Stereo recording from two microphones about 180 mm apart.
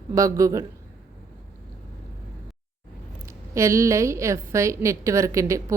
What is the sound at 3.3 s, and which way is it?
Speech, 15° right (ahead or behind).